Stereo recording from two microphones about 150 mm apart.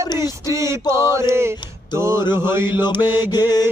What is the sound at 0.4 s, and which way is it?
Speech, 20° right (ahead or behind).